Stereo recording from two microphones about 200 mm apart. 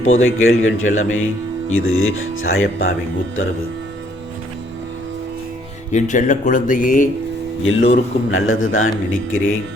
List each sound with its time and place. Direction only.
0.0 s speech: 80° left
5.9 s speech: 35° left (ahead or behind)
7.6 s speech: 75° left (ahead or behind)